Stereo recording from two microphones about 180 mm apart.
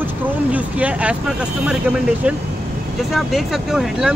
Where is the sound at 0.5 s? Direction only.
5° right (ahead or behind).